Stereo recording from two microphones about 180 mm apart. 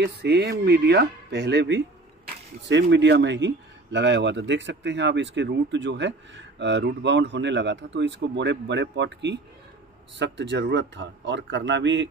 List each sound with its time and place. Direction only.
0.0 s speech: 65° right (ahead or behind); by 12.1 s 85° right